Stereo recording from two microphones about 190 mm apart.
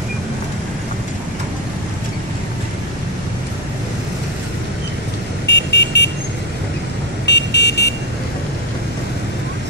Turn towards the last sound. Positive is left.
turn(degrees=60)  # may be behind; listen again after turning